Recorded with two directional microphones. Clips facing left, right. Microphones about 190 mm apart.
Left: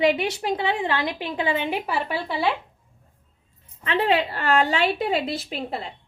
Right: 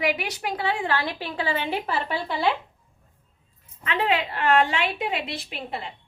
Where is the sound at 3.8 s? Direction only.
35° left (ahead or behind).